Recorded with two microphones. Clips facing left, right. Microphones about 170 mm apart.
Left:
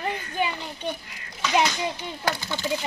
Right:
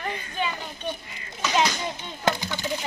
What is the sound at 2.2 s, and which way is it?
Speech, 15° right (ahead or behind).